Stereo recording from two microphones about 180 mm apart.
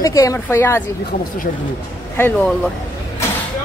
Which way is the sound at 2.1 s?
10° left (ahead or behind).